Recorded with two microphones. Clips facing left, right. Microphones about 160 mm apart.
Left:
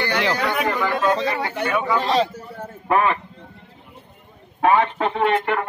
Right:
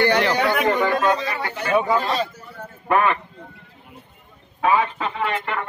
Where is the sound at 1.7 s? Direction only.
30° right (ahead or behind).